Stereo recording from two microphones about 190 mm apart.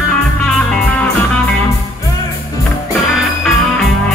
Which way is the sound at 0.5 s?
5° left (ahead or behind).